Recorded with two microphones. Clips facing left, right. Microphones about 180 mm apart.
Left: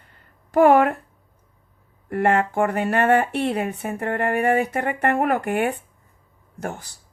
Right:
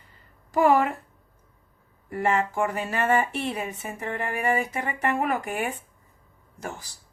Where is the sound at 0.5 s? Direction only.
60° left (ahead or behind).